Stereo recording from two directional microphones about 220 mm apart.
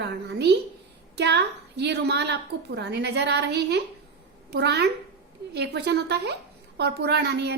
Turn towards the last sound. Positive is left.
turn(degrees=-50)  # may be behind; listen again after turning